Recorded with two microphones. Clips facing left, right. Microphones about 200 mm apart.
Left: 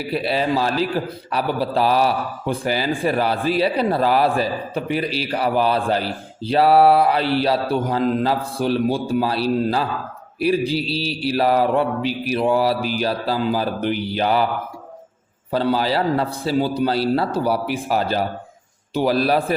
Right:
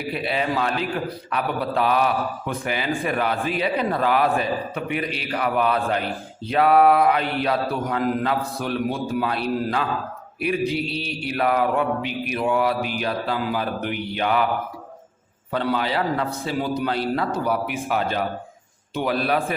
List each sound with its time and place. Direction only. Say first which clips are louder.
0.1 s a man's voice: left 4 dB; 35° left (ahead or behind)
15.5 s a man's voice: left 4 dB; 35° left (ahead or behind)